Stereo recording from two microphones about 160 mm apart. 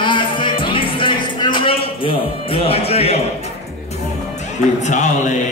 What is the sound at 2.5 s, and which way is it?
Speech, 40° left (ahead or behind).